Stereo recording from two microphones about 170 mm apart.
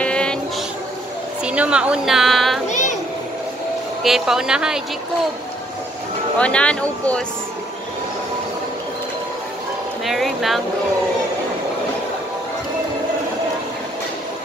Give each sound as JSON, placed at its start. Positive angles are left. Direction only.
{"t": 0.0, "sound": "music", "side_deg": 5}
{"t": 1.4, "sound": "a woman's voice", "side_deg": -5}
{"t": 2.7, "sound": "a sound", "side_deg": 45}
{"t": 4.0, "sound": "a woman's voice", "side_deg": 0}
{"t": 6.3, "sound": "speech", "side_deg": 5}
{"t": 10.0, "sound": "a woman's voice", "side_deg": 0}